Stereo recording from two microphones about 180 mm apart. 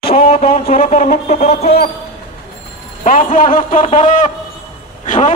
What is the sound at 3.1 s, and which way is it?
A man's voice, 50° left (ahead or behind).